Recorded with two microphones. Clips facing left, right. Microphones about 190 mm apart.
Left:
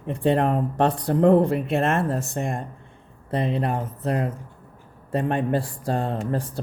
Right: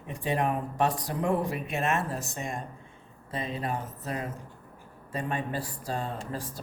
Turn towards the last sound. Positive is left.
turn(degrees=60)  # may be behind; listen again after turning